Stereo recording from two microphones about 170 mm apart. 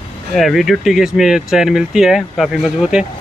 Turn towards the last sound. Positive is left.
turn(degrees=-5)  # may be behind; listen again after turning